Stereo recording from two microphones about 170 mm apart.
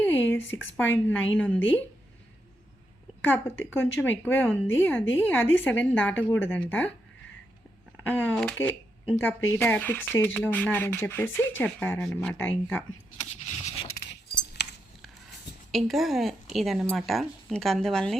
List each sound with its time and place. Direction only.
0.0 s speech: 10° left (ahead or behind)
3.2 s speech: 15° left (ahead or behind)
8.0 s speech: 10° left (ahead or behind)
13.4 s vehicle: 40° left (ahead or behind)
14.5 s keys jangling: 80° left
15.7 s speech: centre (ahead or behind)